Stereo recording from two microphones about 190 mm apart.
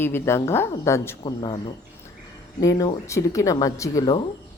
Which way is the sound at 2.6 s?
20° left (ahead or behind).